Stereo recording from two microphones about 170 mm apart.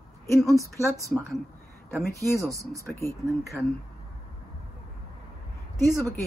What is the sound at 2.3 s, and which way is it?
Speech, 20° right (ahead or behind).